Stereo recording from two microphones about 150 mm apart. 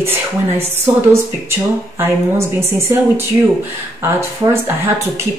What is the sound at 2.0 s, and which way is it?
A woman's voice, 15° right (ahead or behind).